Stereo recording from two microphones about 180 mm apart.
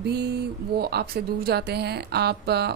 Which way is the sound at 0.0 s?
65° right (ahead or behind).